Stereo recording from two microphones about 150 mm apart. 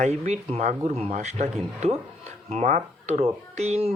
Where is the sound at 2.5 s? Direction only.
55° right (ahead or behind).